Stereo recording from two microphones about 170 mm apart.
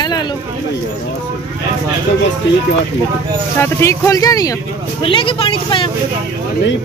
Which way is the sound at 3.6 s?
15° left (ahead or behind).